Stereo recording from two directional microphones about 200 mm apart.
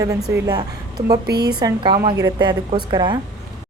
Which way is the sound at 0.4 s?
20° right (ahead or behind).